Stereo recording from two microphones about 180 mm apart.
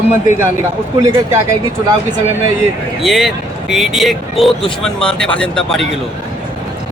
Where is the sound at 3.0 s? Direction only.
Centre (ahead or behind).